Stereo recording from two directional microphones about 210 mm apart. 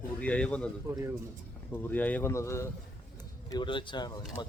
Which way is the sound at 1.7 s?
10° left (ahead or behind).